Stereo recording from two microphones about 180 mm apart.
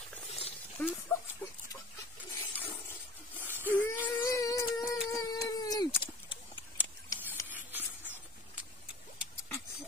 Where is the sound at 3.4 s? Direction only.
10° right (ahead or behind).